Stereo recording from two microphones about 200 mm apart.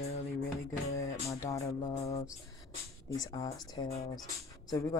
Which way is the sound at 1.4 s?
15° left (ahead or behind).